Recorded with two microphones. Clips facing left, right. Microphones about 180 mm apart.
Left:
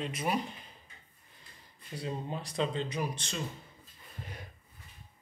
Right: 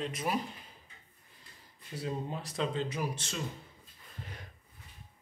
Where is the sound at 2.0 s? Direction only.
5° right (ahead or behind).